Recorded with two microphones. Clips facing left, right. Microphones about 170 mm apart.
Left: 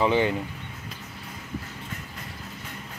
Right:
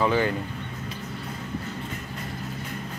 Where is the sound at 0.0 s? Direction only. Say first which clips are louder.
Left 1 dB; 20° left (ahead or behind).